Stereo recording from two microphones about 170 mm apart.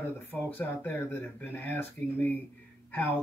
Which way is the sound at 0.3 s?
10° left (ahead or behind).